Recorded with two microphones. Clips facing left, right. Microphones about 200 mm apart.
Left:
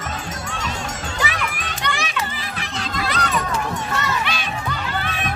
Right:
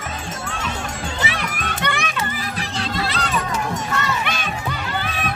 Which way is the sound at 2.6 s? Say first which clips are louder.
Right 1 dB; 30° right (ahead or behind).